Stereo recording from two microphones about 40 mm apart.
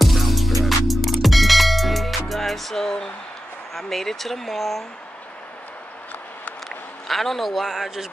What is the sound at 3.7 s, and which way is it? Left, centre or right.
Speech, centre.